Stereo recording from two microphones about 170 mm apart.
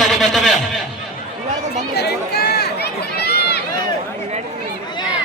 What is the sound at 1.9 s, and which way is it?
Run, 70° left (ahead or behind).